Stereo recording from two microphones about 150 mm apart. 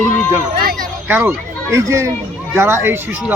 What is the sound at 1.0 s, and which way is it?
A child's voice, 15° right (ahead or behind).